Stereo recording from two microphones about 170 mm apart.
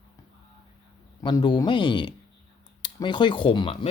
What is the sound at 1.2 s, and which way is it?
Speech, 25° left (ahead or behind).